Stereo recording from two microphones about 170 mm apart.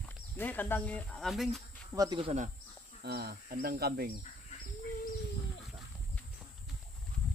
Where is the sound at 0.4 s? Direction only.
10° left (ahead or behind).